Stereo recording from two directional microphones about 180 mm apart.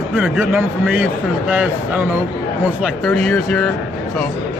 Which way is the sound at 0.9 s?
10° right (ahead or behind).